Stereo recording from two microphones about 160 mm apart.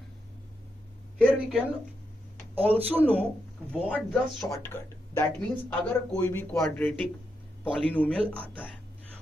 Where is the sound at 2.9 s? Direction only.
10° right (ahead or behind).